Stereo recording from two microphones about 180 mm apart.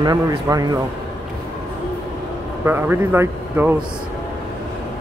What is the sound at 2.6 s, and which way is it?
Speech, 10° right (ahead or behind).